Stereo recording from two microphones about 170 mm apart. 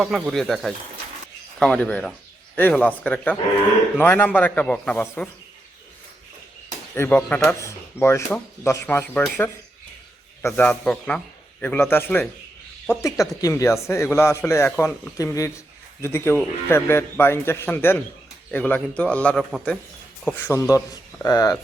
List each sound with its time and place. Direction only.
0.0 s a man's voice: 5° right (ahead or behind)
6.9 s a man's voice: 10° left (ahead or behind)
20.2 s speech: 15° left (ahead or behind)